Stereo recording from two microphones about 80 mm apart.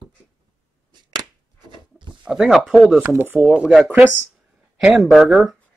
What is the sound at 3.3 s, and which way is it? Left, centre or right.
Speech, centre.